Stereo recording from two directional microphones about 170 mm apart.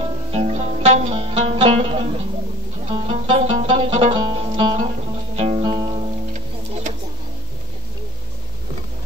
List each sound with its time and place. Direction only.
0.3 s music: 40° right (ahead or behind)